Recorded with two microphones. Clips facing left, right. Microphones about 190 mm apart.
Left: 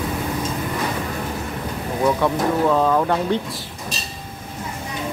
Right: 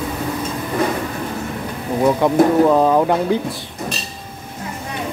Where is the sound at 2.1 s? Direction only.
20° right (ahead or behind).